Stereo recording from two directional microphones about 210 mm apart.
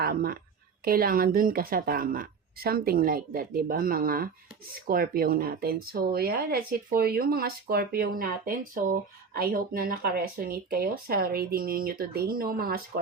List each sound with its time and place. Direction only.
0.0 s a woman's voice: 45° right (ahead or behind)